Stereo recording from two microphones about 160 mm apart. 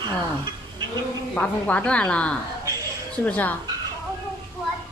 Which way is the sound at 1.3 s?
10° left (ahead or behind).